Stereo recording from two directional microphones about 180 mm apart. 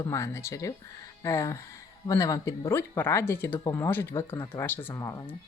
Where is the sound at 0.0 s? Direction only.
15° left (ahead or behind).